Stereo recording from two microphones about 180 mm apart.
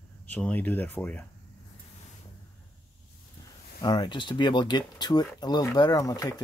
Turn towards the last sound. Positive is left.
turn(degrees=20)  # may be behind; listen again after turning